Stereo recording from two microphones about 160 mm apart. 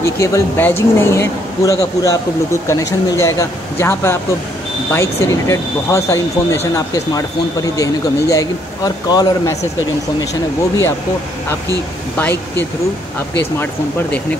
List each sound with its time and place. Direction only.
0.0 s speech: 20° left (ahead or behind)
12.2 s speech: 10° left (ahead or behind)